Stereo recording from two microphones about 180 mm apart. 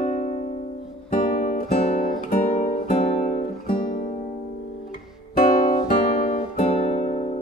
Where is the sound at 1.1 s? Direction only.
50° left (ahead or behind).